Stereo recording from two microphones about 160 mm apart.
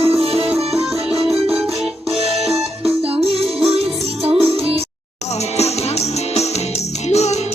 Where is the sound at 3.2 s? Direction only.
40° right (ahead or behind).